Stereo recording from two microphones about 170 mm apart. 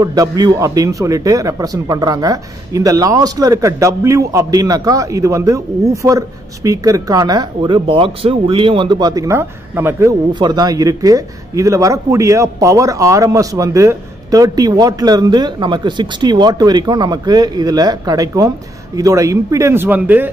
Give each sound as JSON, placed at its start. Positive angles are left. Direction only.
{"t": 0.0, "sound": "speech", "side_deg": -20}